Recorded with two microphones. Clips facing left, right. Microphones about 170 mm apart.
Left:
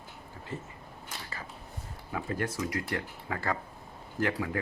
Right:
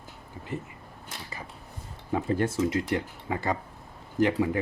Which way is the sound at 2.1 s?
25° right (ahead or behind).